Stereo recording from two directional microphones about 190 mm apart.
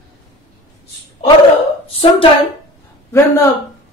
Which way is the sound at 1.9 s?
30° left (ahead or behind).